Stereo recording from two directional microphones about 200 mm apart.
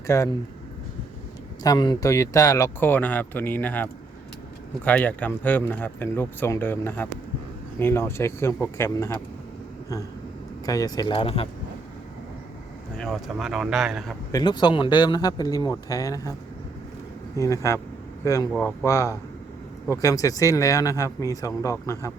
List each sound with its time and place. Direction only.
0.1 s speech: 15° left (ahead or behind)
1.6 s speech: 20° left (ahead or behind)
10.7 s speech: 20° left (ahead or behind)
13.0 s speech: centre (ahead or behind)
14.3 s speech: 20° left (ahead or behind)
17.3 s speech: 15° left (ahead or behind)